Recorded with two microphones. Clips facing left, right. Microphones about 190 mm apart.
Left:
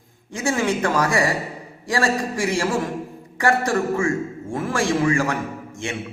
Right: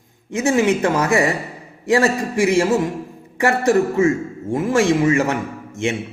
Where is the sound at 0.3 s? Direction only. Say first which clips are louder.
Right 5 dB; 20° right (ahead or behind).